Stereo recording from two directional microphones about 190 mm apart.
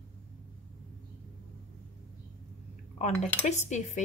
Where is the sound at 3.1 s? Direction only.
5° left (ahead or behind).